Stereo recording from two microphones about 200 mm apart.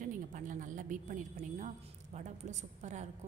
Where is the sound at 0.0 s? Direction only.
40° right (ahead or behind).